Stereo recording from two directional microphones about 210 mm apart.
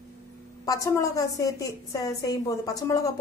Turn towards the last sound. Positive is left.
turn(degrees=15)  # may be behind; listen again after turning